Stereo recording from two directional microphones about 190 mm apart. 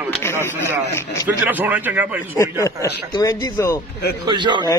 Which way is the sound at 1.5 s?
10° right (ahead or behind).